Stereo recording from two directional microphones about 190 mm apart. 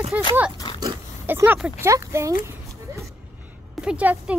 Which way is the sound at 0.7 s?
15° right (ahead or behind).